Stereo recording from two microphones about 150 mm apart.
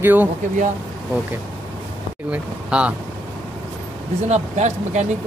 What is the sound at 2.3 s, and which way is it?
Speech, 10° right (ahead or behind).